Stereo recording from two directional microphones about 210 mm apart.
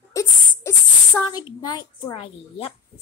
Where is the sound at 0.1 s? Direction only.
15° left (ahead or behind).